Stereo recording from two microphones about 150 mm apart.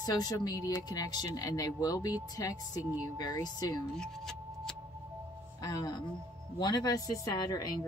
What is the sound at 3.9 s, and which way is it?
Music, 5° left (ahead or behind).